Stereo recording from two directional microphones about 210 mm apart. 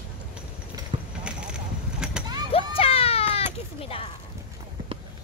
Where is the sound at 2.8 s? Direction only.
25° left (ahead or behind).